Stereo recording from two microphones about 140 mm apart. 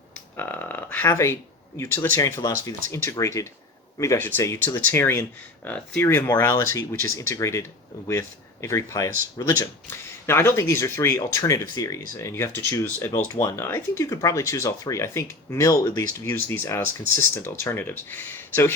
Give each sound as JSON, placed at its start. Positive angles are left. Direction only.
{"t": 0.3, "sound": "a sound", "side_deg": 15}
{"t": 1.8, "sound": "speech", "side_deg": 15}
{"t": 8.6, "sound": "speech", "side_deg": 20}